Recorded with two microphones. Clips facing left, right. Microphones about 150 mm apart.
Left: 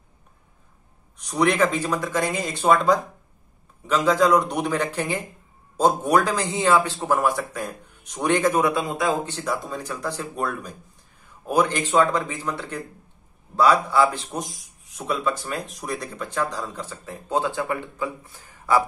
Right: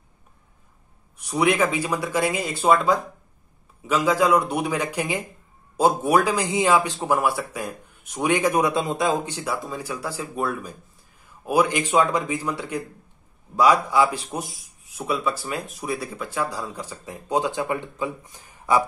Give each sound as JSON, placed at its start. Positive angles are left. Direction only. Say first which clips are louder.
{"t": 1.1, "sound": "a man's voice", "louder": "even", "side_deg": -10}